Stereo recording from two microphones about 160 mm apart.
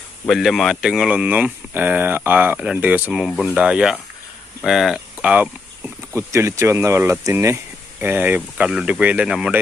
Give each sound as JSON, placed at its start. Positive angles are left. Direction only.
{"t": 0.3, "sound": "speech", "side_deg": 0}